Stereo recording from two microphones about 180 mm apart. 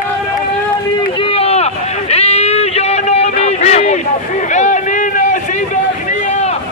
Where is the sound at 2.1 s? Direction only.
35° left (ahead or behind).